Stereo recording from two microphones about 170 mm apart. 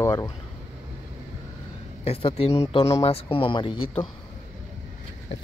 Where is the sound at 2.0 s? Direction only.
35° left (ahead or behind).